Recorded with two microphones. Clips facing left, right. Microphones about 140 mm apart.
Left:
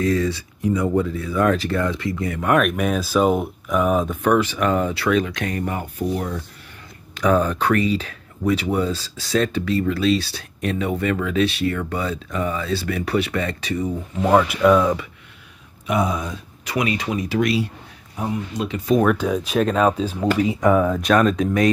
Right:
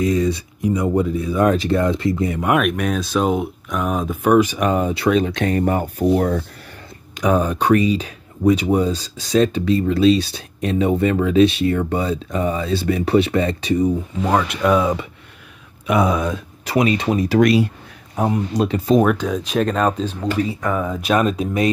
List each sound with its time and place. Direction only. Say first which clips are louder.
0.0 s speech: right 2 dB; 20° right (ahead or behind)
2.5 s speech: left 2 dB; centre (ahead or behind)
4.2 s speech: right 8 dB; 15° right (ahead or behind); by 6.4 s 50° right (ahead or behind)
7.2 s speech: right 1 dB; 15° right (ahead or behind)
14.2 s speech: left 3 dB; 5° left (ahead or behind)
15.9 s speech: right 4 dB; 90° right
16.6 s speech: right 5 dB; 30° right (ahead or behind)
17.4 s speech: right 6 dB; 50° right (ahead or behind)
18.5 s speech: right 6 dB; 40° right (ahead or behind)
19.0 s speech: even; 5° left (ahead or behind)